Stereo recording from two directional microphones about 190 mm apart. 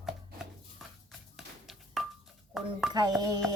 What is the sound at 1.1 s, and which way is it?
Music, centre (ahead or behind).